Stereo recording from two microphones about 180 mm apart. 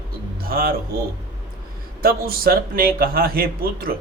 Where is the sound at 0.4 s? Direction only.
55° right (ahead or behind).